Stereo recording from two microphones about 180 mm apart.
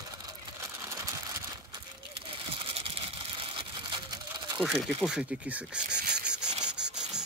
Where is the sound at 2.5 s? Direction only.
30° right (ahead or behind).